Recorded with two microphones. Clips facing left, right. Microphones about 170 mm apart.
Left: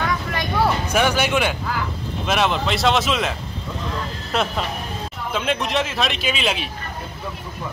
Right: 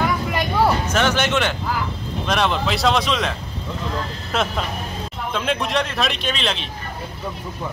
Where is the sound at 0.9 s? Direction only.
10° left (ahead or behind).